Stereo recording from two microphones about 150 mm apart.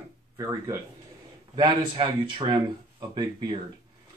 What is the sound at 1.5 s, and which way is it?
Speech, 30° right (ahead or behind).